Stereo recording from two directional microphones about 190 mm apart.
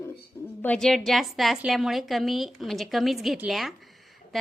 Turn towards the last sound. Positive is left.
turn(degrees=0)  # may be behind; listen again after turning